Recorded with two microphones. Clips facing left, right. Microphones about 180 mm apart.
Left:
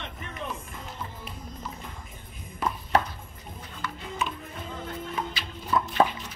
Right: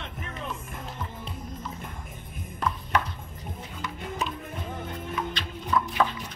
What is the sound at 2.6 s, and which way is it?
Music, 5° left (ahead or behind).